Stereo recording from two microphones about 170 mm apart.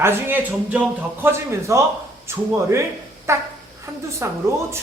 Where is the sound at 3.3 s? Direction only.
15° right (ahead or behind).